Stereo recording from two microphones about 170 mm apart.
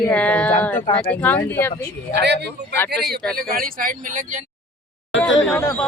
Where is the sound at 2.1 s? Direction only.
80° right.